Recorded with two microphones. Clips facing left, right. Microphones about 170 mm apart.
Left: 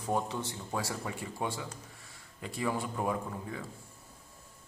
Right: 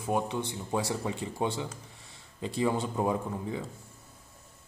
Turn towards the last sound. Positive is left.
turn(degrees=-20)  # may be behind; listen again after turning